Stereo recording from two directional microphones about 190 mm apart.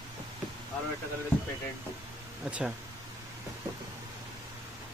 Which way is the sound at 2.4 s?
5° right (ahead or behind).